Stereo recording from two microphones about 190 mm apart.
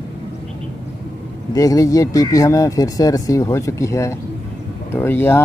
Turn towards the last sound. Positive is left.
turn(degrees=10)  # may be behind; listen again after turning